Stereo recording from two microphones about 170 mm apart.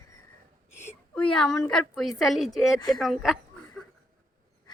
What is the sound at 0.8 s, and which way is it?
A woman's voice, 10° left (ahead or behind).